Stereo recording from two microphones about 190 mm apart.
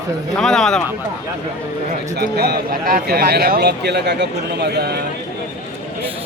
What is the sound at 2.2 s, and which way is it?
Speech, 55° right (ahead or behind).